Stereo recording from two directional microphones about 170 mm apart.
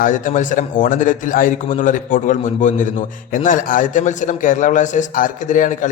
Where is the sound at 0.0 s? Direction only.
50° left (ahead or behind).